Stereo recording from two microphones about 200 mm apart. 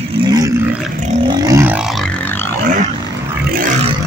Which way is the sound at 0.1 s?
20° right (ahead or behind).